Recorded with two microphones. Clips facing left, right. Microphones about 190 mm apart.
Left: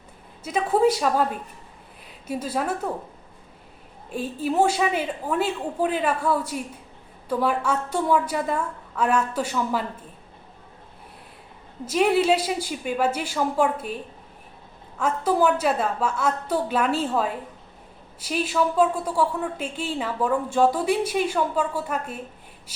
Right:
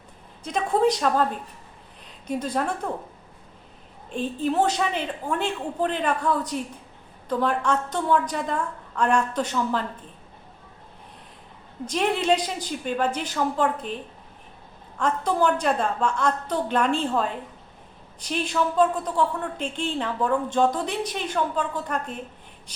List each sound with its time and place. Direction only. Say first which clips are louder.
0.4 s a woman's voice: left 1 dB; 5° left (ahead or behind)
4.1 s a woman's voice: even; 5° left (ahead or behind)
11.9 s a woman's voice: left 3 dB; 5° left (ahead or behind)